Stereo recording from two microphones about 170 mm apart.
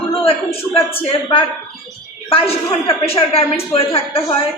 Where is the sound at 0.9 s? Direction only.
30° left (ahead or behind).